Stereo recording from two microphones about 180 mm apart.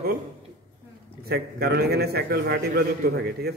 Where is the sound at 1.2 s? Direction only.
60° right (ahead or behind).